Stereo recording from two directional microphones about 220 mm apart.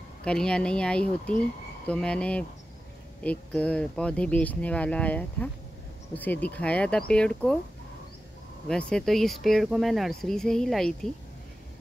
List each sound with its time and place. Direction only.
0.2 s speech: 5° left (ahead or behind)
8.6 s speech: 5° left (ahead or behind)